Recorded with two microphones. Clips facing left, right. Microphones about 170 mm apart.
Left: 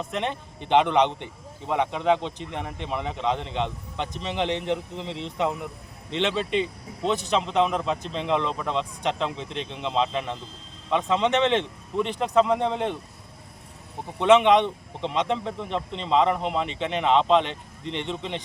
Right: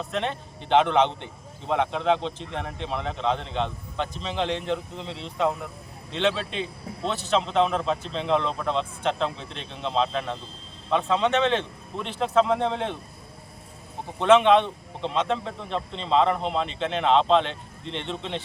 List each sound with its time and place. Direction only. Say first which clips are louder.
0.0 s a man's voice: even; 15° left (ahead or behind)
14.2 s a man's voice: even; 15° left (ahead or behind)